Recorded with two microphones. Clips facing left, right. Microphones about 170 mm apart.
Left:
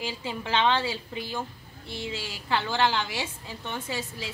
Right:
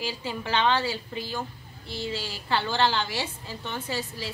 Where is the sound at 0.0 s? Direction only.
20° left (ahead or behind).